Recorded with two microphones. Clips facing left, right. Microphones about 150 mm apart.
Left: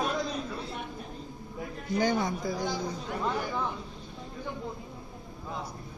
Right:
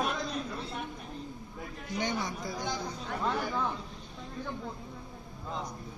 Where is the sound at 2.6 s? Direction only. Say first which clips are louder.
Left 3 dB; 5° left (ahead or behind).